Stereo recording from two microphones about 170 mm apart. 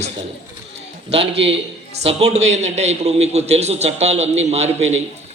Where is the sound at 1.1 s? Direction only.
35° right (ahead or behind).